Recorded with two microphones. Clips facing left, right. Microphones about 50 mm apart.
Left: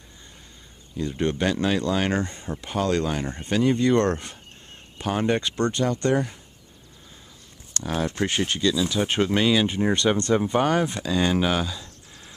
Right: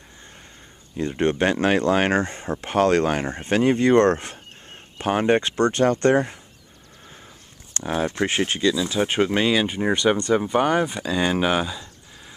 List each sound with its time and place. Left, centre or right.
0.9 s speech: right
4.9 s speech: right
7.7 s speech: right